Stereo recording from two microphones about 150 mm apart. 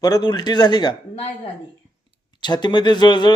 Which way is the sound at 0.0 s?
30° left (ahead or behind).